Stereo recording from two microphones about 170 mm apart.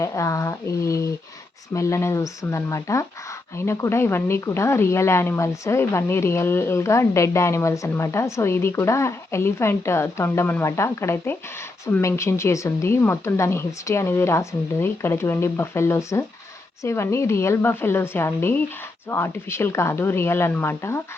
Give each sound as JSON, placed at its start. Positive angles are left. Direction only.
{"t": 0.0, "sound": "speech", "side_deg": 15}